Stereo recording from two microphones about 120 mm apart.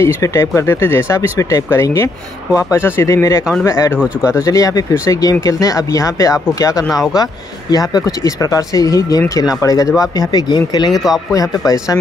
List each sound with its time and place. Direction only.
0.0 s speech: 25° left (ahead or behind)
7.7 s speech: 30° left (ahead or behind)